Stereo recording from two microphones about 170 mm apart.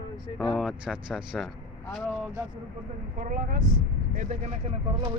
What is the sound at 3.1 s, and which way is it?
Speech, 50° right (ahead or behind).